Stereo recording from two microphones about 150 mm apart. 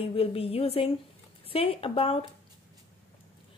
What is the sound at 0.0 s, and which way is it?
Speech, 40° left (ahead or behind).